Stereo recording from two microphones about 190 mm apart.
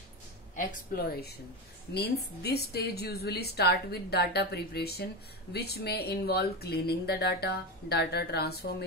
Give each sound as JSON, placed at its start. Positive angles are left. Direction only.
{"t": 0.6, "sound": "a woman's voice", "side_deg": 55}